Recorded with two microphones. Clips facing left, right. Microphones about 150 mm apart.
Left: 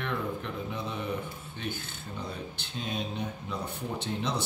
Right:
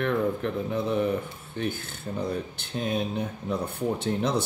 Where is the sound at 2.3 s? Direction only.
55° right (ahead or behind).